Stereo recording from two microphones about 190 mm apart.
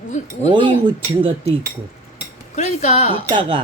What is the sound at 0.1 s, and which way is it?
Speech, 40° left (ahead or behind).